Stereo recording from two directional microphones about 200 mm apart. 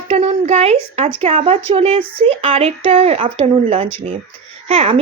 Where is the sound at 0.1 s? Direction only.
30° right (ahead or behind).